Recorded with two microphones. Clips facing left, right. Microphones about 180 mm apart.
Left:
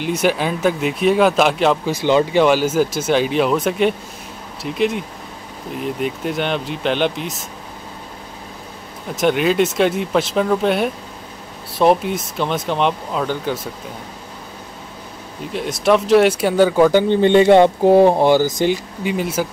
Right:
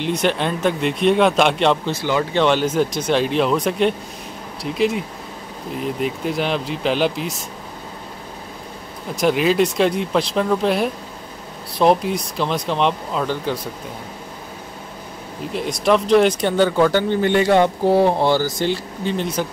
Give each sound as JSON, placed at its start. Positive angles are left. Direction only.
{"t": 0.0, "sound": "speech", "side_deg": 5}
{"t": 2.0, "sound": "speech", "side_deg": 20}
{"t": 2.3, "sound": "speech", "side_deg": 5}
{"t": 9.1, "sound": "speech", "side_deg": 0}
{"t": 15.5, "sound": "speech", "side_deg": 0}